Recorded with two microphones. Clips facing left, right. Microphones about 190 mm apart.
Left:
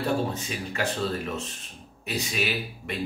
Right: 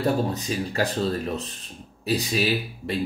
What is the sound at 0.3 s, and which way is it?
Speech, 35° right (ahead or behind).